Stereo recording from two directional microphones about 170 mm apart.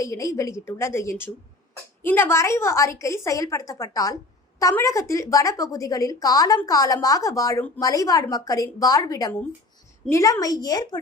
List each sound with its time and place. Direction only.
0.0 s a woman's voice: 20° left (ahead or behind)